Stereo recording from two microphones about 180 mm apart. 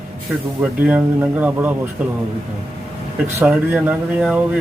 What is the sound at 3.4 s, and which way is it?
Speech, 10° right (ahead or behind).